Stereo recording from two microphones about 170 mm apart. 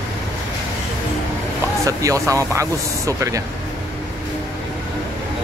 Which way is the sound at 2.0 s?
20° right (ahead or behind).